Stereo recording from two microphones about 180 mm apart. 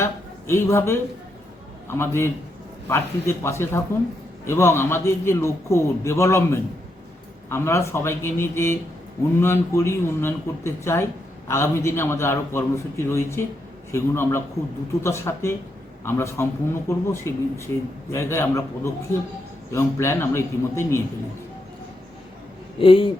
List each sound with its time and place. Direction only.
0.0 s a sound: 15° left (ahead or behind)
1.9 s a man's voice: 15° left (ahead or behind)
22.8 s speech: 30° left (ahead or behind)